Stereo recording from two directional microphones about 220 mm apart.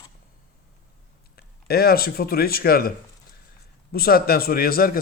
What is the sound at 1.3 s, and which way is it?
Speech, 45° left (ahead or behind).